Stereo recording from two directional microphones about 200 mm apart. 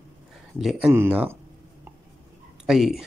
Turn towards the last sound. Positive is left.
turn(degrees=0)  # may be behind; listen again after turning